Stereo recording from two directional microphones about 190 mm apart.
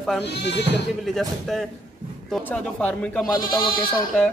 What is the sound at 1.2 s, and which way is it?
Speech, centre (ahead or behind).